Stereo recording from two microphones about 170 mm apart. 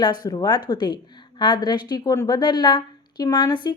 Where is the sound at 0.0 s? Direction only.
25° left (ahead or behind).